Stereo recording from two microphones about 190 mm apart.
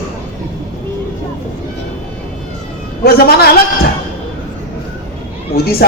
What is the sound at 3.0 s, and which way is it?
Speech, 55° left (ahead or behind).